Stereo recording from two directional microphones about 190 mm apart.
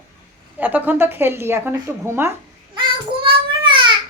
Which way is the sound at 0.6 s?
10° right (ahead or behind).